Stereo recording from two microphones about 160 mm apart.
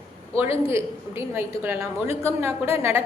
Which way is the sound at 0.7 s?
15° right (ahead or behind).